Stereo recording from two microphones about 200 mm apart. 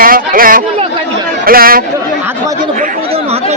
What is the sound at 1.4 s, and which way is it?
Speech, 45° right (ahead or behind).